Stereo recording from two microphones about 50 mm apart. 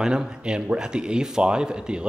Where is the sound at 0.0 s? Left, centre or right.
Centre.